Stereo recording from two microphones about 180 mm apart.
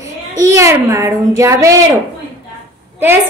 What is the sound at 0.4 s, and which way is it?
A woman's voice, 15° right (ahead or behind).